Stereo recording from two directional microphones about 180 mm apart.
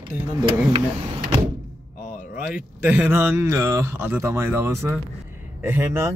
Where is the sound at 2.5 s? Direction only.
10° right (ahead or behind).